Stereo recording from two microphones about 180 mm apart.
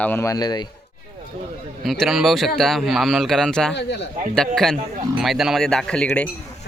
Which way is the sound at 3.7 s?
70° left (ahead or behind).